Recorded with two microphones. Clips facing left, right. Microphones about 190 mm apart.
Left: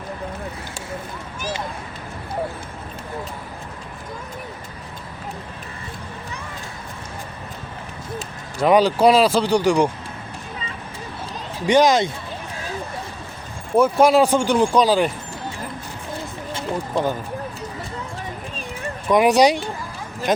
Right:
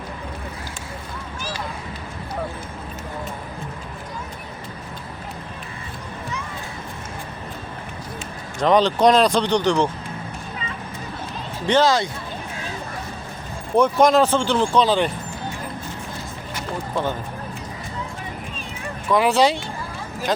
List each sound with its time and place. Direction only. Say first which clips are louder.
1.4 s vehicle: left 4 dB; 20° left (ahead or behind)
8.5 s speech: left 2 dB; 10° left (ahead or behind)
11.6 s speech: left 2 dB; 15° left (ahead or behind)
13.7 s speech: left 1 dB; 5° left (ahead or behind)
16.9 s speech: left 2 dB; 10° left (ahead or behind)
19.1 s speech: left 3 dB; 20° left (ahead or behind)